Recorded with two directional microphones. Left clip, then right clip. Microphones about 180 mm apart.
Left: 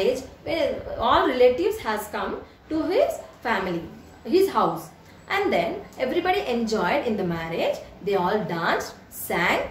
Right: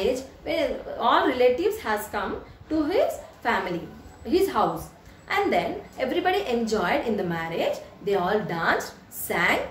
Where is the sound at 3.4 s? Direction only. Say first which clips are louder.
Even; 15° right (ahead or behind).